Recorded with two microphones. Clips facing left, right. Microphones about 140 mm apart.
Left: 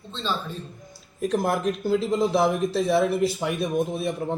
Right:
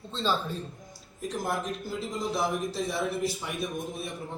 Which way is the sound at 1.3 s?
70° left (ahead or behind).